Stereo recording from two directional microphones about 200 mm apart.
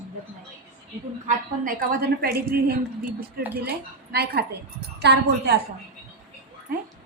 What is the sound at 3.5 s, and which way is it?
A woman's voice, 50° right (ahead or behind).